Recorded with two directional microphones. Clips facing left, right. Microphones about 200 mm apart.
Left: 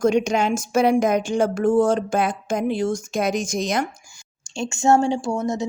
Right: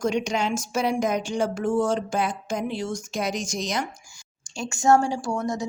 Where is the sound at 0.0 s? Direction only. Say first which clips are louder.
Left 6 dB; 50° left (ahead or behind).